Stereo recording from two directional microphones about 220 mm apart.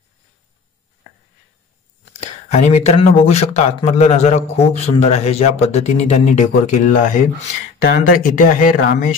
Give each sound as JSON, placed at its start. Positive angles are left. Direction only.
{"t": 2.1, "sound": "speech", "side_deg": 30}